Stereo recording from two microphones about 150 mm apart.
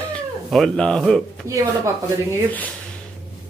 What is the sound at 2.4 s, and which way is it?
Speech, 10° left (ahead or behind).